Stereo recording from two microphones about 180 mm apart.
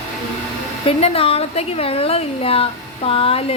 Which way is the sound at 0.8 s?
30° left (ahead or behind).